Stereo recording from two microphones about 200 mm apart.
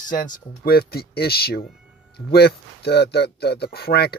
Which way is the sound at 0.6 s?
50° left (ahead or behind).